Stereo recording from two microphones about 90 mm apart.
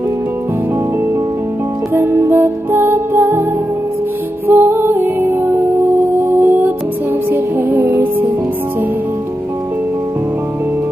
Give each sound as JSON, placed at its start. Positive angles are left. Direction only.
{"t": 2.0, "sound": "music", "side_deg": -25}
{"t": 4.5, "sound": "music", "side_deg": -25}